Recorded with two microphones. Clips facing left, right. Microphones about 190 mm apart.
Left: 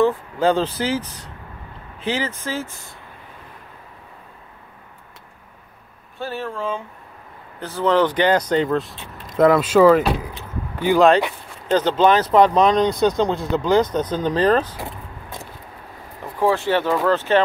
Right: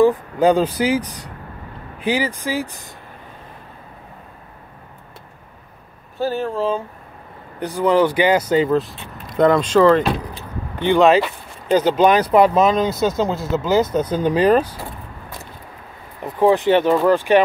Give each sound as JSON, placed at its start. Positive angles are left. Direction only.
{"t": 0.0, "sound": "speech", "side_deg": -15}
{"t": 6.1, "sound": "speech", "side_deg": -35}
{"t": 7.6, "sound": "speech", "side_deg": -10}
{"t": 16.2, "sound": "speech", "side_deg": -20}